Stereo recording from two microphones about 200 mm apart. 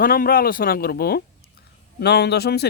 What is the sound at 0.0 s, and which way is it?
A man's voice, 45° left (ahead or behind).